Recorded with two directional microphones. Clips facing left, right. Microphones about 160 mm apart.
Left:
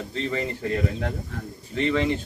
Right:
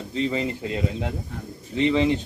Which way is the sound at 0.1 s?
15° right (ahead or behind).